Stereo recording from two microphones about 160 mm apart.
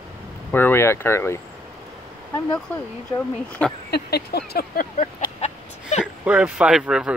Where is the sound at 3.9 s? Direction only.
85° left; by 5.1 s 65° left (ahead or behind).